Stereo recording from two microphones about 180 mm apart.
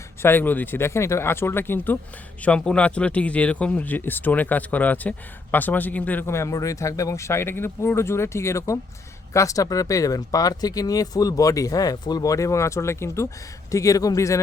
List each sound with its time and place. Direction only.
0.2 s speech: 10° left (ahead or behind)